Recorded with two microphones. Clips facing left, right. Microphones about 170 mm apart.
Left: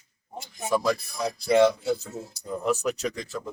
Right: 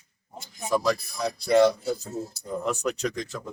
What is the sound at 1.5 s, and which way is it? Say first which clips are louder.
Speech: right 1 dB; 40° right (ahead or behind).